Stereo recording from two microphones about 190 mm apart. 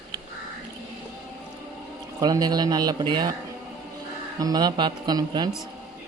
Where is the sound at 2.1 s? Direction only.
20° right (ahead or behind).